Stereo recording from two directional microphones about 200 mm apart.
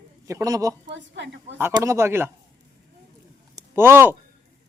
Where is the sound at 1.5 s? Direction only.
15° right (ahead or behind).